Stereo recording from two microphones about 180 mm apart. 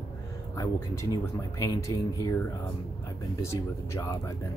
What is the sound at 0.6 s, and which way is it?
Speech, 20° left (ahead or behind).